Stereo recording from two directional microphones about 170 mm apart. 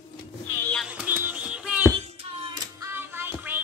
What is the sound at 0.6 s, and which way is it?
Music, 10° left (ahead or behind).